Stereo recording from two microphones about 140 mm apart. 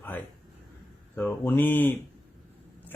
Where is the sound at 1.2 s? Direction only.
15° left (ahead or behind).